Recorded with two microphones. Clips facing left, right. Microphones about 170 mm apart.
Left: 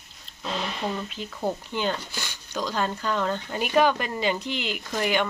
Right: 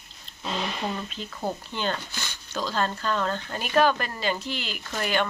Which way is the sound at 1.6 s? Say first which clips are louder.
Left 2 dB; 15° left (ahead or behind).